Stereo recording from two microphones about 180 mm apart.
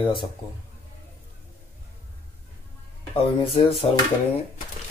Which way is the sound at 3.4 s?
30° left (ahead or behind).